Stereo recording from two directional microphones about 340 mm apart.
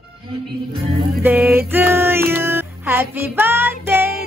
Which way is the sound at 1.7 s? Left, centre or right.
Centre.